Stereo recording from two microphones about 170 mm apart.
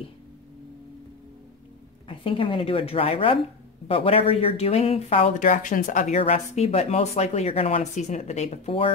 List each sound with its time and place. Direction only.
2.0 s speech: 30° left (ahead or behind)
5.5 s speech: 50° left (ahead or behind); by 8.9 s 35° left (ahead or behind)